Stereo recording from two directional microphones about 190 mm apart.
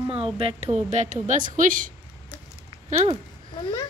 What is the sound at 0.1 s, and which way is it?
A woman's voice, 30° right (ahead or behind).